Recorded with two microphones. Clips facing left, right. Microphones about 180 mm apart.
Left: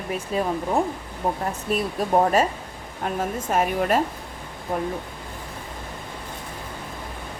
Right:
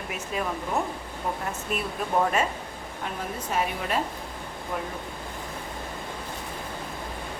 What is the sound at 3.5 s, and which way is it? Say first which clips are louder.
Speech: left 6 dB; 45° left (ahead or behind).